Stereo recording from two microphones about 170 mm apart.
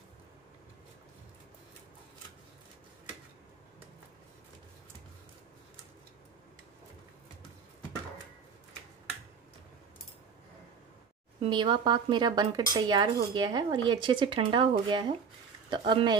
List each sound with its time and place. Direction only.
11.4 s speech: 25° right (ahead or behind)